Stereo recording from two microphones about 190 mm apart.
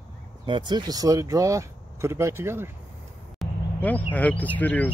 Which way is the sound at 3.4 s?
10° left (ahead or behind).